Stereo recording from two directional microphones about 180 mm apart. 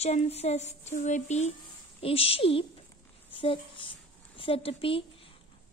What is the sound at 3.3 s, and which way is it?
Speech, 30° left (ahead or behind).